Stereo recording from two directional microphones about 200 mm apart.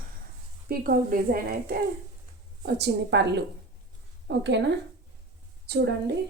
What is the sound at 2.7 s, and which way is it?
A woman's voice, 60° right (ahead or behind).